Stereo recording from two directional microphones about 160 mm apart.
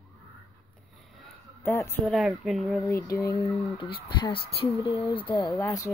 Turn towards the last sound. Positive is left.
turn(degrees=20)  # may be behind; listen again after turning